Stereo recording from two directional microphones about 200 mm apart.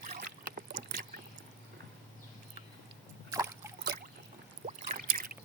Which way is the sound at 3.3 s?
15° right (ahead or behind).